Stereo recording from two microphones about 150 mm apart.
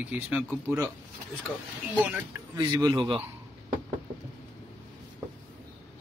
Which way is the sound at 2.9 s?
30° right (ahead or behind).